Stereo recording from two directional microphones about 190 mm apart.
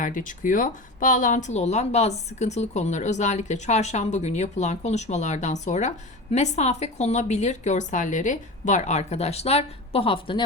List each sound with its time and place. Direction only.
0.0 s speech: 45° left (ahead or behind); by 10.4 s 30° left (ahead or behind)